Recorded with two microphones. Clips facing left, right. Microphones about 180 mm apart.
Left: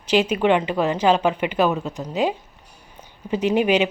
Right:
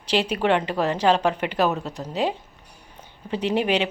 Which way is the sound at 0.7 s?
Centre (ahead or behind).